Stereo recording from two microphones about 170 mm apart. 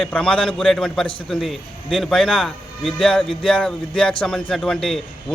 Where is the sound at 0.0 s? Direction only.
5° left (ahead or behind).